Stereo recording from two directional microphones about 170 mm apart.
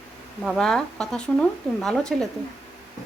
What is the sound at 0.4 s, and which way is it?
Speech, 5° left (ahead or behind).